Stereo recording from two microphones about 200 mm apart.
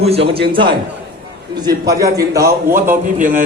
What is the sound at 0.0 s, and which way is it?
Speech, 30° right (ahead or behind).